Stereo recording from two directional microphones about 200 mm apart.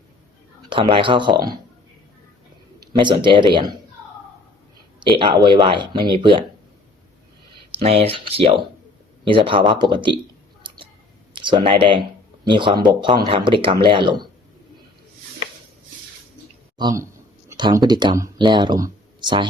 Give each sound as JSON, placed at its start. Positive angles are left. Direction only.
{"t": 0.7, "sound": "speech", "side_deg": -25}
{"t": 2.8, "sound": "speech", "side_deg": -25}
{"t": 5.5, "sound": "speech", "side_deg": -25}
{"t": 7.7, "sound": "speech", "side_deg": -30}
{"t": 11.3, "sound": "speech", "side_deg": -25}
{"t": 16.7, "sound": "a man's voice", "side_deg": -20}